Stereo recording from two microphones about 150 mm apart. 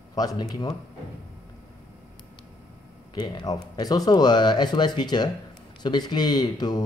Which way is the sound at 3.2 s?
25° left (ahead or behind).